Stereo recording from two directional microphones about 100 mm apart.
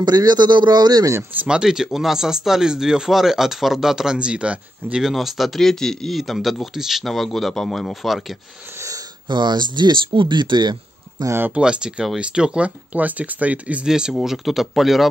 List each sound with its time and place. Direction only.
0.0 s speech: 45° right (ahead or behind)
1.4 s speech: 10° right (ahead or behind)
8.7 s wheeze: 30° right (ahead or behind)
9.3 s speech: 50° right (ahead or behind)
11.2 s speech: 20° right (ahead or behind)
11.6 s speech: 10° right (ahead or behind)